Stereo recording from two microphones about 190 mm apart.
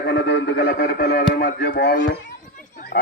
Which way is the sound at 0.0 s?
60° left (ahead or behind).